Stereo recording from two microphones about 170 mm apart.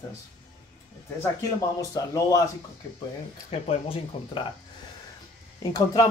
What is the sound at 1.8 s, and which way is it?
Speech, 20° left (ahead or behind).